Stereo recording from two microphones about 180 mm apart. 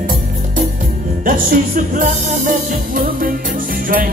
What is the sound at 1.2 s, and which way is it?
Music, 50° right (ahead or behind).